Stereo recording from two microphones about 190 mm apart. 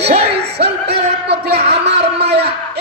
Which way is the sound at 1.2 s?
55° right (ahead or behind).